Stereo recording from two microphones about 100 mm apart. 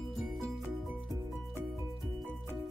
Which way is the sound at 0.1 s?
Centre (ahead or behind).